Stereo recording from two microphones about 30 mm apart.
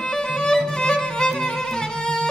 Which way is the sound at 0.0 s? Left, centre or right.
Left.